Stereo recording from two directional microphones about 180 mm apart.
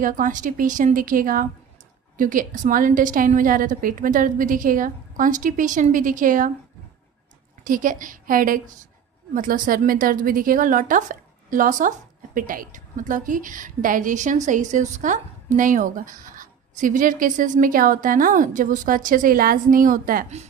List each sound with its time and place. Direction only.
0.0 s a woman's voice: 45° right (ahead or behind)
7.6 s a woman's voice: 50° right (ahead or behind)